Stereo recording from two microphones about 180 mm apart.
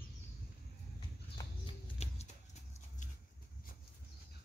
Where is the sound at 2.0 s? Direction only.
35° left (ahead or behind).